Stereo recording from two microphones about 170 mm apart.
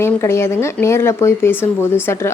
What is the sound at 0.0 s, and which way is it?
A woman's voice, 15° left (ahead or behind).